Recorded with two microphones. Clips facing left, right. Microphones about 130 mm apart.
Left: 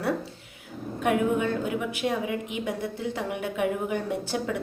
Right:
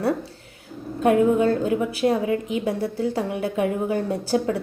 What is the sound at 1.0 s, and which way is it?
A woman's voice, 35° right (ahead or behind).